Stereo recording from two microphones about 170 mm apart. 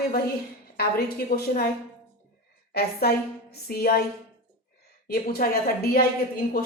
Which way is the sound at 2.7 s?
65° left (ahead or behind).